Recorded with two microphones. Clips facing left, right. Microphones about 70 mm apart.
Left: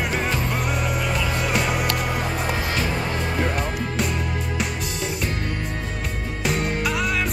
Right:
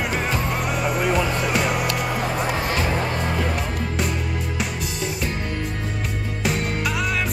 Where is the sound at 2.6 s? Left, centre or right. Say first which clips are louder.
Right 2 dB; right.